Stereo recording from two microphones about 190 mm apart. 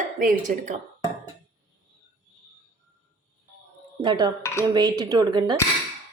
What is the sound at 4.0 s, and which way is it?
A woman's voice, 25° right (ahead or behind).